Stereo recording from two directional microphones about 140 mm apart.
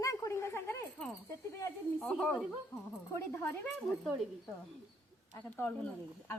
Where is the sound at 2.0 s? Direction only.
Centre (ahead or behind).